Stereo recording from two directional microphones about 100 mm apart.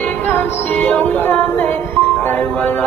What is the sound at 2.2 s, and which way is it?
Speech, 15° left (ahead or behind).